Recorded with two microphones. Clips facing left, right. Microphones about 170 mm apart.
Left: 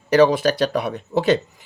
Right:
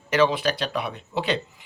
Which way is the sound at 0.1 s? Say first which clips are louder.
Left 6 dB; 40° left (ahead or behind).